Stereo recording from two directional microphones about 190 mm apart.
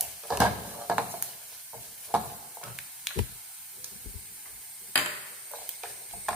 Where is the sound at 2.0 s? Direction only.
Centre (ahead or behind).